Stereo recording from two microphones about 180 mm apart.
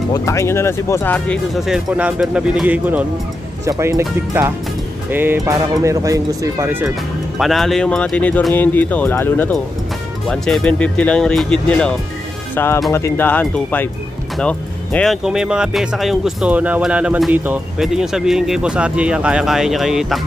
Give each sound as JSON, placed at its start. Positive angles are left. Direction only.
{"t": 0.1, "sound": "speech", "side_deg": 15}
{"t": 7.3, "sound": "speech", "side_deg": 0}